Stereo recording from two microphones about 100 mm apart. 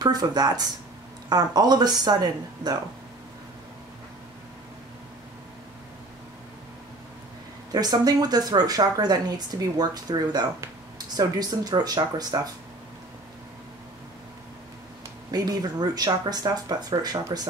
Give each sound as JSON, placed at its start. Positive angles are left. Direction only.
{"t": 0.0, "sound": "a woman's voice", "side_deg": -40}
{"t": 7.7, "sound": "a woman's voice", "side_deg": -40}
{"t": 15.3, "sound": "a woman's voice", "side_deg": -40}